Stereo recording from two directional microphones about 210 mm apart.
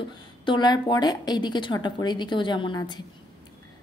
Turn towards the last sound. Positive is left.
turn(degrees=20)  # may be behind; listen again after turning